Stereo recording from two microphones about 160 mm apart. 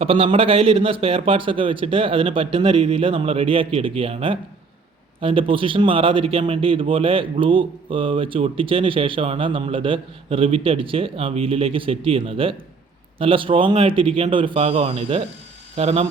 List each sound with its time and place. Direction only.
0.0 s a man's voice: 35° right (ahead or behind)